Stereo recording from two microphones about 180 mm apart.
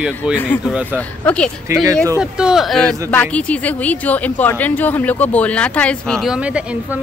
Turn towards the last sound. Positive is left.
turn(degrees=-5)  # may be behind; listen again after turning